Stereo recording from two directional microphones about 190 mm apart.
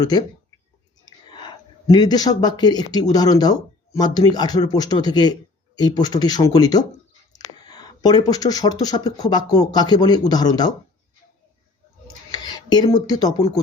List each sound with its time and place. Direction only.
0.0 s speech: 20° left (ahead or behind)
1.0 s chewing: 25° left (ahead or behind)
1.9 s speech: 20° left (ahead or behind)
12.0 s a sound: 20° left (ahead or behind)